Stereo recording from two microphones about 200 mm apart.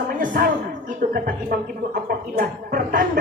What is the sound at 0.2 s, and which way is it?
Speech, 45° right (ahead or behind).